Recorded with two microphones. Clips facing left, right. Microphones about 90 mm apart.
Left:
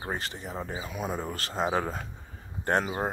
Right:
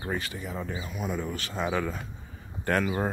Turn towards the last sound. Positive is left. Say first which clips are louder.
# right 1 dB
turn(degrees=25)  # may be behind; listen again after turning